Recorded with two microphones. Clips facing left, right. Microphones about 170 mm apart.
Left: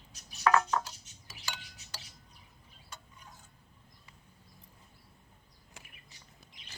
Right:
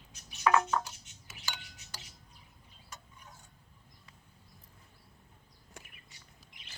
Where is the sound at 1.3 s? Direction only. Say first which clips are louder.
Even; 35° left (ahead or behind).